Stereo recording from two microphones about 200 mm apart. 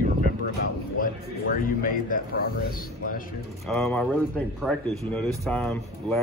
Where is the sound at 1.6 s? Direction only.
45° left (ahead or behind).